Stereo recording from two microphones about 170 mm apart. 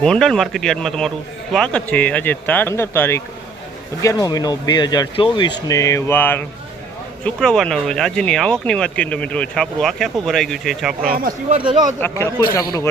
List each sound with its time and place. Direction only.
0.0 s speech: 5° left (ahead or behind)
11.0 s speech: 60° right (ahead or behind)
11.5 s speech: 30° right (ahead or behind)
11.9 s speech: 10° left (ahead or behind)